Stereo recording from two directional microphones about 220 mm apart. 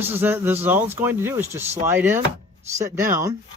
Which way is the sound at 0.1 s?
10° right (ahead or behind).